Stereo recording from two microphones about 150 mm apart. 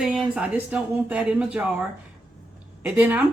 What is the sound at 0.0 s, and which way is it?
Speech, 5° right (ahead or behind).